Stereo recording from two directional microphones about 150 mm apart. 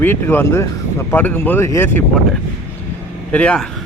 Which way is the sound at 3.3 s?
10° left (ahead or behind).